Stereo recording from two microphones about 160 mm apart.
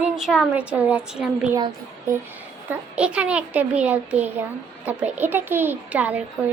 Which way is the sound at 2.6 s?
5° right (ahead or behind).